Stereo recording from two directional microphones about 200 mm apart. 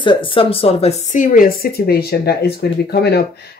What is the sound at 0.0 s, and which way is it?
Speech, 25° left (ahead or behind).